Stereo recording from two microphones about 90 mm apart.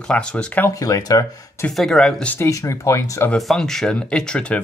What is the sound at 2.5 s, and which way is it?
Speech, 35° left (ahead or behind).